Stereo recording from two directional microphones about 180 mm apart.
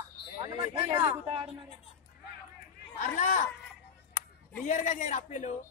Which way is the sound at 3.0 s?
50° left (ahead or behind).